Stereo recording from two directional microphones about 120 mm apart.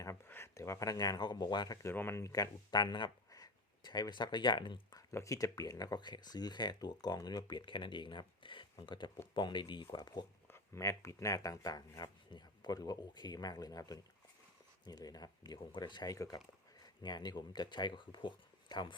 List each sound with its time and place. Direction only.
0.3 s speech: 20° left (ahead or behind)
1.9 s speech: 20° left (ahead or behind); by 5.0 s 40° left (ahead or behind)
5.1 s speech: 25° left (ahead or behind)